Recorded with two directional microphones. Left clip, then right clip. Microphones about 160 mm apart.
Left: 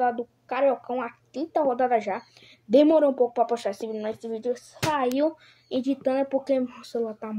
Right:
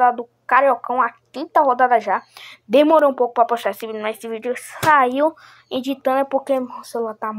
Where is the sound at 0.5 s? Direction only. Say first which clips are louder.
Right 9 dB; 20° left (ahead or behind).